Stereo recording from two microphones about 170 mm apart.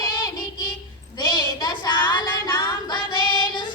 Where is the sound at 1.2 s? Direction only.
25° left (ahead or behind).